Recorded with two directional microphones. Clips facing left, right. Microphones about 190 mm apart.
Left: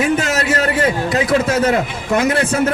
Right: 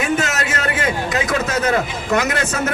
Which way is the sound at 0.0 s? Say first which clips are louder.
Left 3 dB; 35° left (ahead or behind).